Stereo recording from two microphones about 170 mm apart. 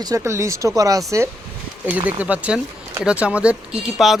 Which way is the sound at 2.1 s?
10° right (ahead or behind).